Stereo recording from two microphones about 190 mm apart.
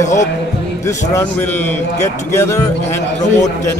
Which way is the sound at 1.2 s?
10° left (ahead or behind).